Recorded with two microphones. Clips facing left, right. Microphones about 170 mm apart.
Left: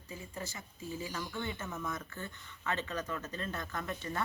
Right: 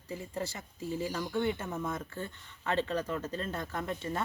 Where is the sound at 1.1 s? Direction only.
35° right (ahead or behind).